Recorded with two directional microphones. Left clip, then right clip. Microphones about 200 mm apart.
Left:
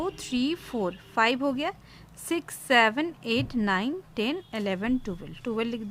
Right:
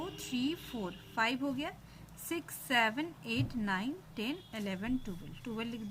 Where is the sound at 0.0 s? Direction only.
60° left (ahead or behind).